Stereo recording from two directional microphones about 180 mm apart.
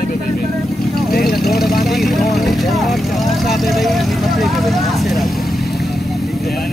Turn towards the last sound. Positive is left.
turn(degrees=0)  # may be behind; listen again after turning